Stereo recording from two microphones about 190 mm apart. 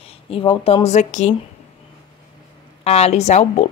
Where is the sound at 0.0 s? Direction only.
30° left (ahead or behind).